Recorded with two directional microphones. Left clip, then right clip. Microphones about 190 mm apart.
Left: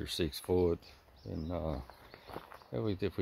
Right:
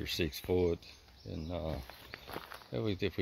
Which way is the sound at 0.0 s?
10° left (ahead or behind).